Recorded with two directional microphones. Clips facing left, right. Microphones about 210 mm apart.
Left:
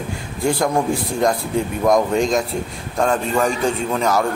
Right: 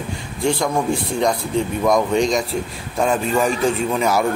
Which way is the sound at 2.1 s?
5° left (ahead or behind).